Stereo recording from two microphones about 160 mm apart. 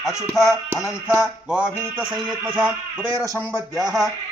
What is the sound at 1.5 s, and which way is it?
Music, 5° right (ahead or behind).